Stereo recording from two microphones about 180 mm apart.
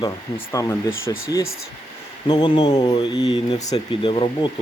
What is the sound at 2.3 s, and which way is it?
Speech, 25° left (ahead or behind).